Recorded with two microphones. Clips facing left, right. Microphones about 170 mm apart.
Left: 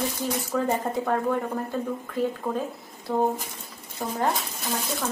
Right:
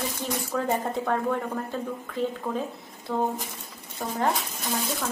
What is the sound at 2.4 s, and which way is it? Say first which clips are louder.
Speech: left 1 dB; 10° left (ahead or behind).